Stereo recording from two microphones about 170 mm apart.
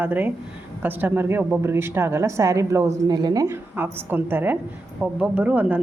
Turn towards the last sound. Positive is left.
turn(degrees=-10)  # may be behind; listen again after turning